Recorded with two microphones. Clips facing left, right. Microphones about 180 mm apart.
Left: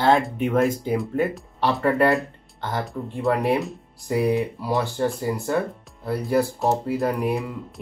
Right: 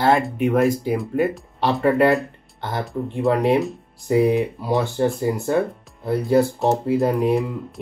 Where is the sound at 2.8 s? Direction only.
Centre (ahead or behind).